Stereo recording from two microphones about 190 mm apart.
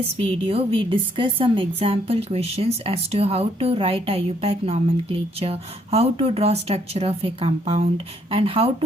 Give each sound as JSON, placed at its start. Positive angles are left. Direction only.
{"t": 0.4, "sound": "a woman's voice", "side_deg": -30}